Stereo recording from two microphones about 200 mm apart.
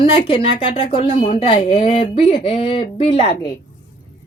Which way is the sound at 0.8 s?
25° left (ahead or behind).